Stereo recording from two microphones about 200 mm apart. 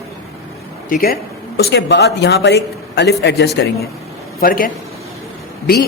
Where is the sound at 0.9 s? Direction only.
50° left (ahead or behind).